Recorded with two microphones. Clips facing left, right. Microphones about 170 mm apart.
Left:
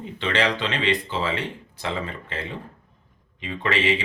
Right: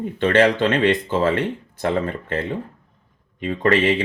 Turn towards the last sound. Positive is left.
turn(degrees=-50)  # may be behind; listen again after turning